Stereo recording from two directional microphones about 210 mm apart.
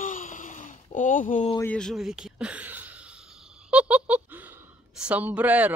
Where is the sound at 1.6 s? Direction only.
5° left (ahead or behind).